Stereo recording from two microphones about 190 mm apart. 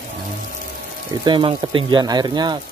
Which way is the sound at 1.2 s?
25° right (ahead or behind).